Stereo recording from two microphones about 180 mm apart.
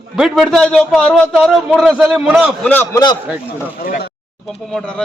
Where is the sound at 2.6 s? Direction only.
10° left (ahead or behind).